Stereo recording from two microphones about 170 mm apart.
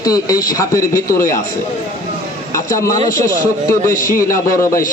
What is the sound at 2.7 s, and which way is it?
Speech, 20° left (ahead or behind).